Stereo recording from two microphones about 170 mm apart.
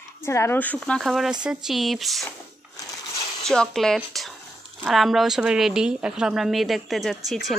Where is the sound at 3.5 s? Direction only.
5° left (ahead or behind).